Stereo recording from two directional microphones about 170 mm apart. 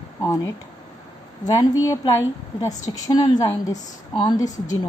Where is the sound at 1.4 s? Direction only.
20° left (ahead or behind).